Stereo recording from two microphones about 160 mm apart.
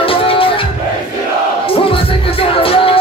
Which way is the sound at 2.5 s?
35° left (ahead or behind).